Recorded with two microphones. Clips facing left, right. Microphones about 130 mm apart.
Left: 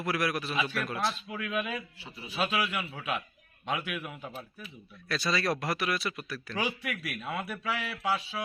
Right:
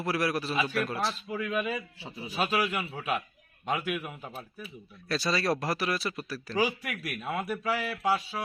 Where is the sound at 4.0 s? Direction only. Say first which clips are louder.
Even; 10° right (ahead or behind).